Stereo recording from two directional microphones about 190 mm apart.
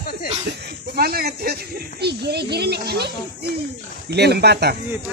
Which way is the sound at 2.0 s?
60° right (ahead or behind).